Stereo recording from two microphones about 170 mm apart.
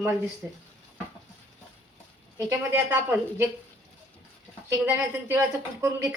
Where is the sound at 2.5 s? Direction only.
10° right (ahead or behind).